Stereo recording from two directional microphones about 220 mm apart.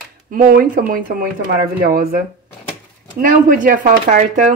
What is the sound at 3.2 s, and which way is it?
Speech, 40° right (ahead or behind).